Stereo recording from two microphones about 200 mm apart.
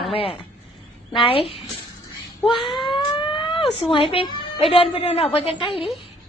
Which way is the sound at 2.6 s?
Centre (ahead or behind).